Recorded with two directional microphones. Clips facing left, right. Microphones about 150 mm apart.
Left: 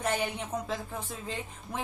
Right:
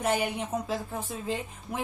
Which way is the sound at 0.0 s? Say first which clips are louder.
Right 3 dB; 5° right (ahead or behind).